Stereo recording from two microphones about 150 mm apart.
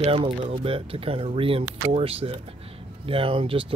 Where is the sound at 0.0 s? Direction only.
40° right (ahead or behind).